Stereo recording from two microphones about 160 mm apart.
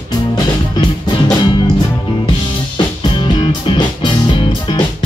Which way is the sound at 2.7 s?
30° left (ahead or behind).